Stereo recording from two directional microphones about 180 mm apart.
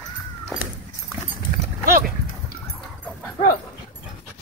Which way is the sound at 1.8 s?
50° right (ahead or behind).